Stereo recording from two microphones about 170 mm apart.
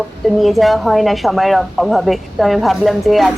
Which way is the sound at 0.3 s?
Centre (ahead or behind).